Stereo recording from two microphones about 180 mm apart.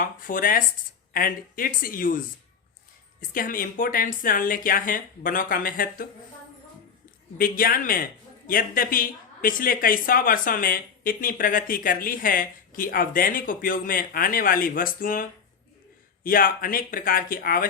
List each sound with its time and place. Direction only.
0.0 s a man's voice: 50° left (ahead or behind)
7.3 s a man's voice: 50° left (ahead or behind)